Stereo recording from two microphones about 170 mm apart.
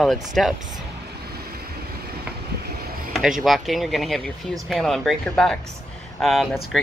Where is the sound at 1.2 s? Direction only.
65° right (ahead or behind).